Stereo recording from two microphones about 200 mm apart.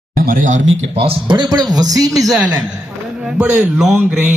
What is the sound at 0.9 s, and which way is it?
A man's voice, 25° right (ahead or behind).